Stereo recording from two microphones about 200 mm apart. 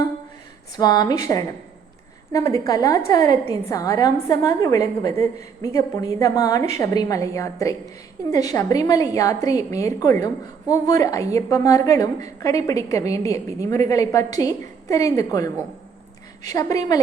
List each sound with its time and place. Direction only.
0.8 s a woman's voice: 20° left (ahead or behind)